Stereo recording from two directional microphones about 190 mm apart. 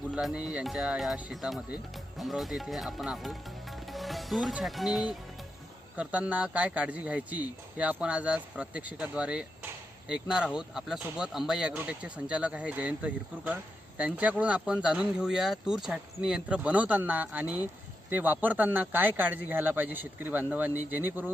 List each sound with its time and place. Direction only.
0.1 s a man's voice: 5° right (ahead or behind)